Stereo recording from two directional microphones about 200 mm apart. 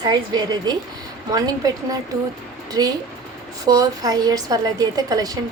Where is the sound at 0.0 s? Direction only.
20° right (ahead or behind).